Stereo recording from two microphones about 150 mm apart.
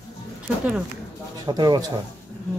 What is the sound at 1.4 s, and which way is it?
Speech, 30° right (ahead or behind).